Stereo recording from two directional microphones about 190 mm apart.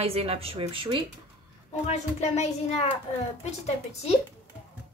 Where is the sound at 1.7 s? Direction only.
35° left (ahead or behind).